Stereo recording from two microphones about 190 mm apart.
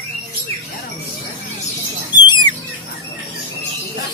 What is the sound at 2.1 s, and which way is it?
Rodents, 25° left (ahead or behind).